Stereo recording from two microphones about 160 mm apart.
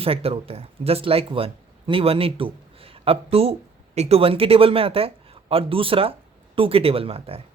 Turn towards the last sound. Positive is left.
turn(degrees=-35)  # may be behind; listen again after turning